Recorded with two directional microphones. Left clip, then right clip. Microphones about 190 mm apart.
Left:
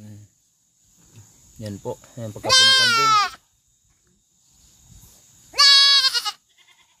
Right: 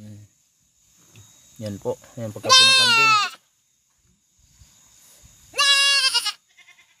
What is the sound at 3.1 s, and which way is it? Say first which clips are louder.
Baby cry: left 2 dB; 15° left (ahead or behind).